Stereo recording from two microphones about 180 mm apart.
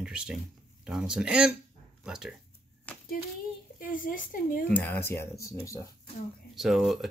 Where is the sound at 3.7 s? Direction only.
50° left (ahead or behind).